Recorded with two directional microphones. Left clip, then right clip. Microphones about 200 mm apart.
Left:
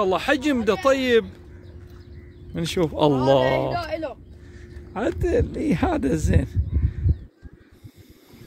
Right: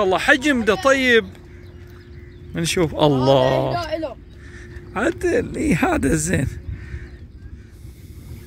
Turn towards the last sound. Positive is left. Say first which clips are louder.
# right 3 dB
turn(degrees=0)  # may be behind; listen again after turning